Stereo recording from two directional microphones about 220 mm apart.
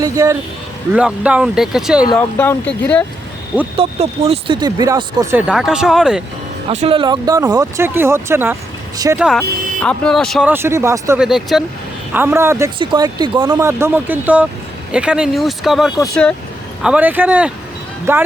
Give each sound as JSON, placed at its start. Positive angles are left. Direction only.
{"t": 0.0, "sound": "speech", "side_deg": -15}
{"t": 0.9, "sound": "speech", "side_deg": -5}
{"t": 2.1, "sound": "speech", "side_deg": 10}
{"t": 3.8, "sound": "speech", "side_deg": -30}
{"t": 6.7, "sound": "speech", "side_deg": -25}
{"t": 10.5, "sound": "speech", "side_deg": -10}
{"t": 11.2, "sound": "speech", "side_deg": 0}